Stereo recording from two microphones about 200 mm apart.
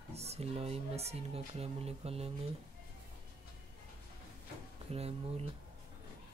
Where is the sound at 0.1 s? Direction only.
30° right (ahead or behind).